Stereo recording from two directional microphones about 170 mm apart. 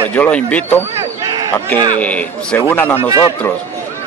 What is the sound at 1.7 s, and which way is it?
Speech, 25° right (ahead or behind).